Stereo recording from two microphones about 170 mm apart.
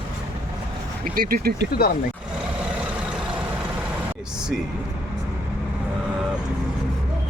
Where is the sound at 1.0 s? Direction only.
55° right (ahead or behind).